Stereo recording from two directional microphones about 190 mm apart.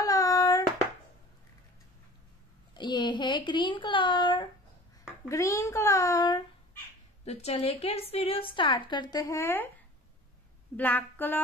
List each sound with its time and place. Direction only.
0.0 s hands: 20° left (ahead or behind)
2.7 s a child's voice: 25° left (ahead or behind)
7.2 s a woman's voice: 35° left (ahead or behind); by 9.7 s 15° left (ahead or behind)
10.8 s speech: 10° left (ahead or behind)